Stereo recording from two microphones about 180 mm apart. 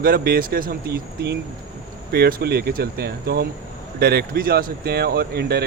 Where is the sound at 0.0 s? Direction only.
55° right (ahead or behind).